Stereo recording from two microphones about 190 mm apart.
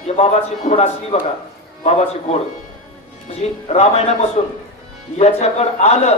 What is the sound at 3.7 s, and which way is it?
Speech, 35° left (ahead or behind).